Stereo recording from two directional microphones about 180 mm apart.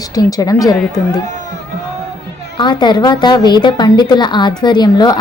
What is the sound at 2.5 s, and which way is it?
A woman's voice, 25° left (ahead or behind).